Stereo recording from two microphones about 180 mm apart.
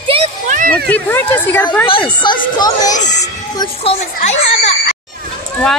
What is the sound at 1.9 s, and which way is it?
Speech, 30° left (ahead or behind).